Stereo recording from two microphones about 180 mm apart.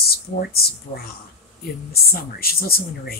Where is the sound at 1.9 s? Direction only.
55° left (ahead or behind).